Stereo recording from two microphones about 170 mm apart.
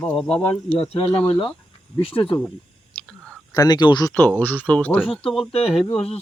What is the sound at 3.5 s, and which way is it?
Speech, 25° left (ahead or behind).